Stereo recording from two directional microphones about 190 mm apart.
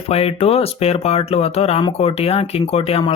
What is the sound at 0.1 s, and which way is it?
Speech, 30° left (ahead or behind).